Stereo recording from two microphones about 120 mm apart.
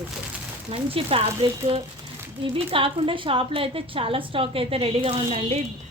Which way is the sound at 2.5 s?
45° right (ahead or behind).